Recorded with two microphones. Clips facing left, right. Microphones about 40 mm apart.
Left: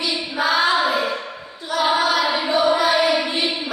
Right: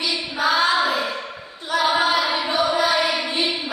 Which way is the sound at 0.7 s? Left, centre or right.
Centre.